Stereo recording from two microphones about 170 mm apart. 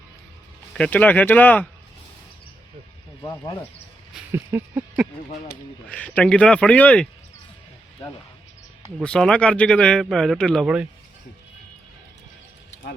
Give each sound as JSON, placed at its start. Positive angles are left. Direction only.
{"t": 0.7, "sound": "speech", "side_deg": 5}
{"t": 3.2, "sound": "speech", "side_deg": 20}
{"t": 4.3, "sound": "speech", "side_deg": -15}
{"t": 5.9, "sound": "speech", "side_deg": 5}
{"t": 9.0, "sound": "speech", "side_deg": 5}